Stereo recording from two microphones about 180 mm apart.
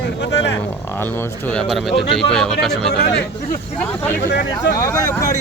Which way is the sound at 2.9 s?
65° left (ahead or behind).